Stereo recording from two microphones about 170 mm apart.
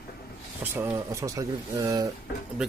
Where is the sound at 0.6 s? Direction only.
10° right (ahead or behind).